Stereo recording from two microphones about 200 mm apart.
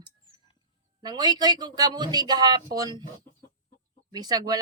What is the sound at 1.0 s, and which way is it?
Speech, 20° right (ahead or behind).